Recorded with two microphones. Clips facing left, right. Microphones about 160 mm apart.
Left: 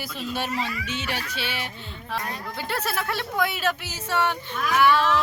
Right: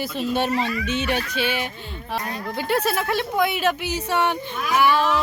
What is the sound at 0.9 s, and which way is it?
Speech, 20° right (ahead or behind).